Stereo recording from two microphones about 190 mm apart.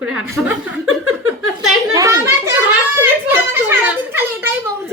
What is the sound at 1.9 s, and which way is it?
A woman's voice, 15° right (ahead or behind).